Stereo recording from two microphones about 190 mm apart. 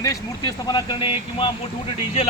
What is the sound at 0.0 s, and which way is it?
Speech, 20° left (ahead or behind).